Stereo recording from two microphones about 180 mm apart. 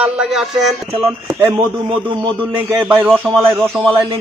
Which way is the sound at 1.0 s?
10° right (ahead or behind).